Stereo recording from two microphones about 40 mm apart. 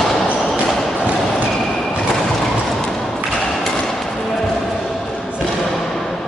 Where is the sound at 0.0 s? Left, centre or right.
Centre.